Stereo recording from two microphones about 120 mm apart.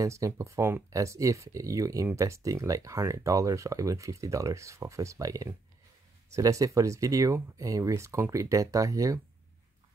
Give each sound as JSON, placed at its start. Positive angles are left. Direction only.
{"t": 0.0, "sound": "speech", "side_deg": -25}